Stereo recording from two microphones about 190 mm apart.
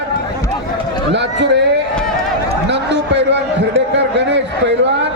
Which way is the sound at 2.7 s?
65° right (ahead or behind).